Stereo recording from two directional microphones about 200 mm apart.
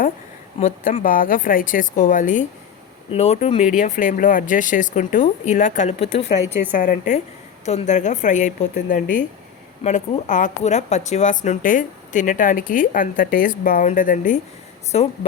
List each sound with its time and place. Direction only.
0.6 s speech: 40° left (ahead or behind)